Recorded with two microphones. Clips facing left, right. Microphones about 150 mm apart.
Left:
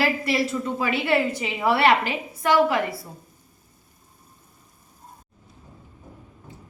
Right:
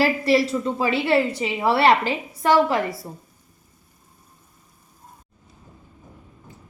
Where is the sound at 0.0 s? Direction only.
35° right (ahead or behind).